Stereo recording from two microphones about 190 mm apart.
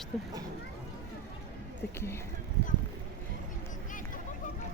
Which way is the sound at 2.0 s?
15° left (ahead or behind).